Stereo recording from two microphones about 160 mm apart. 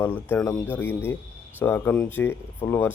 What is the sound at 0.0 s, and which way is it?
Speech, 15° left (ahead or behind).